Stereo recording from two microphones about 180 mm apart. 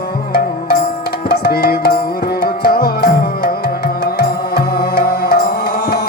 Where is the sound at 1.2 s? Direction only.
60° left (ahead or behind).